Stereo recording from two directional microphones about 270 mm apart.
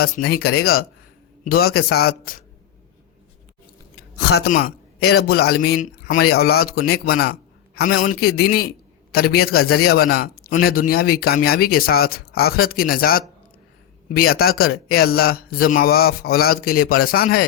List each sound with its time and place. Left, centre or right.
0.3 s speech: left
4.2 s speech: left